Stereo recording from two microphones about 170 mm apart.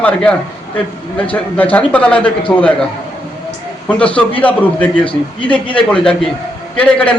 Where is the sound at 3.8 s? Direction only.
10° left (ahead or behind).